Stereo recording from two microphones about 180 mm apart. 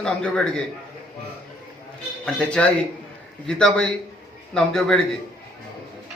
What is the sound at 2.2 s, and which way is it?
Speech, 5° left (ahead or behind).